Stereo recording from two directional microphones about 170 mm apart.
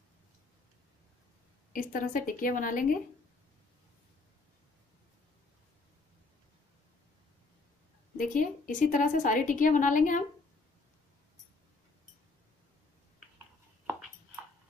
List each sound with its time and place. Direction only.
1.7 s a woman's voice: 55° left (ahead or behind)
8.2 s a woman's voice: 50° left (ahead or behind)